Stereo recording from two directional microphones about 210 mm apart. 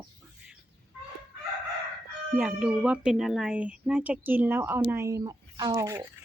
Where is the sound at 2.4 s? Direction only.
5° right (ahead or behind).